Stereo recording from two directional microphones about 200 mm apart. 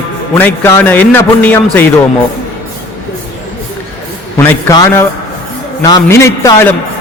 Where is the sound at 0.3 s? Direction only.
10° left (ahead or behind).